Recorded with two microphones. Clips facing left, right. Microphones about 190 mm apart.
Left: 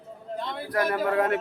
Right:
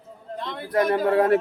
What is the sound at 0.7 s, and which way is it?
Speech, 25° right (ahead or behind).